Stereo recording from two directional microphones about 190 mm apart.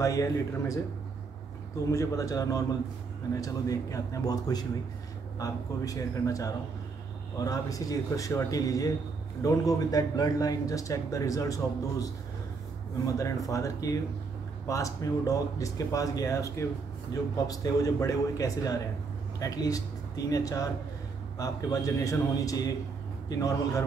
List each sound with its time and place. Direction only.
0.0 s speech: 15° left (ahead or behind)
1.9 s speech: 15° left (ahead or behind)